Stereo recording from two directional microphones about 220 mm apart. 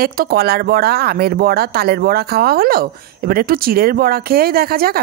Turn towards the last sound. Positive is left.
turn(degrees=-45)  # may be behind; listen again after turning